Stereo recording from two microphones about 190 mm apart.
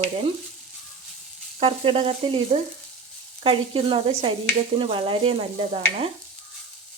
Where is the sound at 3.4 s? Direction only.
30° right (ahead or behind).